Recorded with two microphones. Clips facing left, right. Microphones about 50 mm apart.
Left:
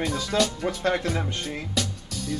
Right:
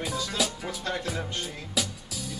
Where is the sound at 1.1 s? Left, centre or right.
Left.